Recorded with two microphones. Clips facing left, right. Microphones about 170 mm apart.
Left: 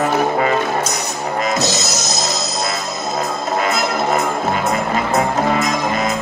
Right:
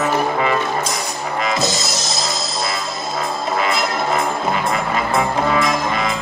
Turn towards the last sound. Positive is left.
turn(degrees=45)  # may be behind; listen again after turning